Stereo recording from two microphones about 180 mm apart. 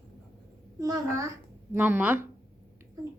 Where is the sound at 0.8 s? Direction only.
20° right (ahead or behind).